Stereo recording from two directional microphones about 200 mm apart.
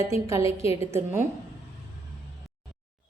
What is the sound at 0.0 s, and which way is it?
Speech, 15° right (ahead or behind).